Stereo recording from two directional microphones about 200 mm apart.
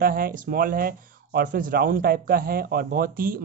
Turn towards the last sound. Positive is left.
turn(degrees=-45)  # may be behind; listen again after turning